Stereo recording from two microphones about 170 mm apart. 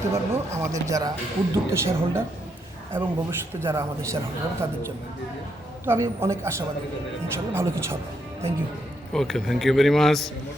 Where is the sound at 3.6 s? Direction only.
15° right (ahead or behind).